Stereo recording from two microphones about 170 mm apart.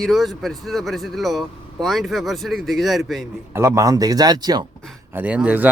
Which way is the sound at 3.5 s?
20° right (ahead or behind).